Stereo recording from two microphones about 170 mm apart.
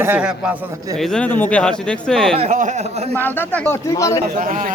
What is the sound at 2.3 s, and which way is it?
Speech, 35° right (ahead or behind).